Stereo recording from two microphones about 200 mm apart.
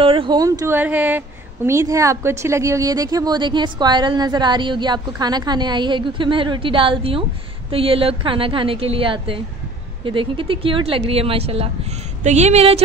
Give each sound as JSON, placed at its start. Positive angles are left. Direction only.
{"t": 0.0, "sound": "a woman's voice", "side_deg": -25}